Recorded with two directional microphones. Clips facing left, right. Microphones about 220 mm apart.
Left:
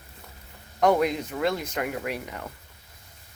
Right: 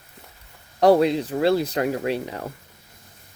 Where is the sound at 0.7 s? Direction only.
35° right (ahead or behind).